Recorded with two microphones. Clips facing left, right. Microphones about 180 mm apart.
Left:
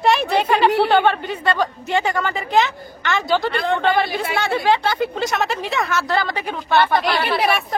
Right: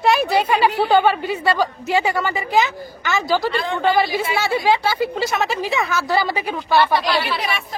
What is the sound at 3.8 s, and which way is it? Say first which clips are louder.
A man's voice: right 1 dB; 5° right (ahead or behind).